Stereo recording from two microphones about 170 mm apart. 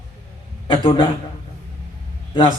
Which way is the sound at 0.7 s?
30° left (ahead or behind).